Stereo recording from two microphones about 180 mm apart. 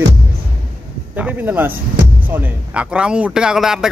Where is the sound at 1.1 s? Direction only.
10° right (ahead or behind).